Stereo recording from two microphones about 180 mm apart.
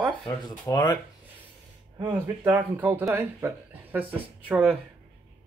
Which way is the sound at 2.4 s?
10° right (ahead or behind).